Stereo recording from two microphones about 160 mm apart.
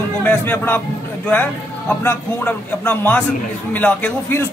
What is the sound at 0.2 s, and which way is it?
A man's voice, 10° left (ahead or behind).